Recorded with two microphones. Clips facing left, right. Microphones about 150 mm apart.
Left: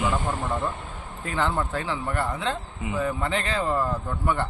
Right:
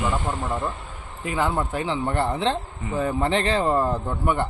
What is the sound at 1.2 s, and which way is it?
A man's voice, 10° right (ahead or behind).